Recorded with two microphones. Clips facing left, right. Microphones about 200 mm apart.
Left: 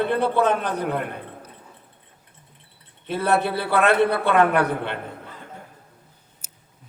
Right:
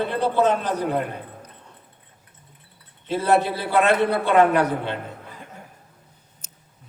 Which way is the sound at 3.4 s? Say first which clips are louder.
Even; 60° left (ahead or behind).